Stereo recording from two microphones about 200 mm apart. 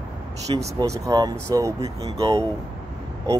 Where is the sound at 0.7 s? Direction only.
15° right (ahead or behind).